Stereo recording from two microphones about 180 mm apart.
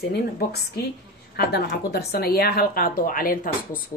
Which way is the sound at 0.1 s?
60° left (ahead or behind).